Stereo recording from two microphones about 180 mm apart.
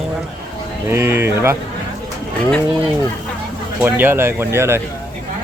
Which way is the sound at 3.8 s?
10° right (ahead or behind).